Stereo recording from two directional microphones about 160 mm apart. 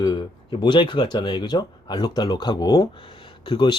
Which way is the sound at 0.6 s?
30° left (ahead or behind).